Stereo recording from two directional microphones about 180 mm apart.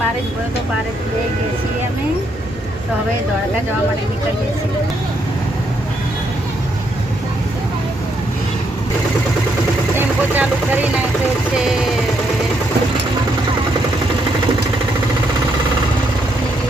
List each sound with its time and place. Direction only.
9.9 s vehicle: 10° right (ahead or behind)